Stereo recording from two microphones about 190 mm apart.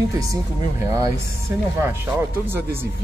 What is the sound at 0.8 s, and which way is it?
Speech, 15° right (ahead or behind).